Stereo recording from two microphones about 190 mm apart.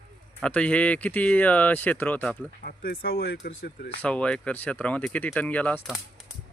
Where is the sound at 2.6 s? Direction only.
50° left (ahead or behind).